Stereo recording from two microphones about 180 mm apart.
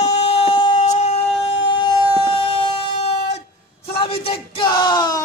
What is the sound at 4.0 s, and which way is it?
Bellow, 30° left (ahead or behind).